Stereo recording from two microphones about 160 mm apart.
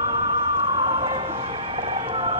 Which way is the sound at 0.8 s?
30° right (ahead or behind).